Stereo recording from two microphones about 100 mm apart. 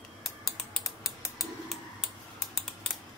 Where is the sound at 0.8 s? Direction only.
Centre (ahead or behind).